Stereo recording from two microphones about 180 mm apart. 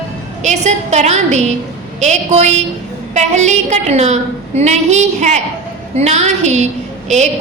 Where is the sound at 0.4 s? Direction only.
40° right (ahead or behind).